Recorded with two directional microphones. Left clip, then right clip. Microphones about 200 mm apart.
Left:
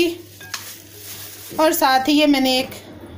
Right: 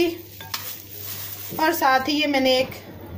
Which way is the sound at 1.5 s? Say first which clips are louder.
Left 3 dB; 35° left (ahead or behind).